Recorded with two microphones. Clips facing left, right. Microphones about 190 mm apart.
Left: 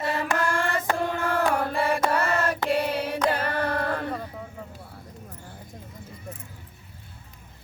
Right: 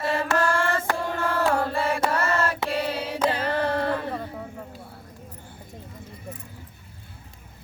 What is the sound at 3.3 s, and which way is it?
Music, 55° left (ahead or behind).